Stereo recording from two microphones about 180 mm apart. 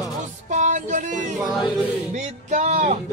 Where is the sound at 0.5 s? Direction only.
45° right (ahead or behind).